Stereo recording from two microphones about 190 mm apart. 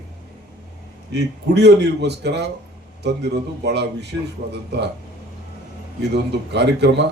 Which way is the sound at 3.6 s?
60° right (ahead or behind).